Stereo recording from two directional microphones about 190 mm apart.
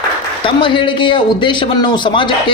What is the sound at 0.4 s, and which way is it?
A man's voice, 25° left (ahead or behind).